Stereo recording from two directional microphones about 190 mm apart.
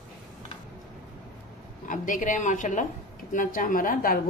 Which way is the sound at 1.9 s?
45° left (ahead or behind).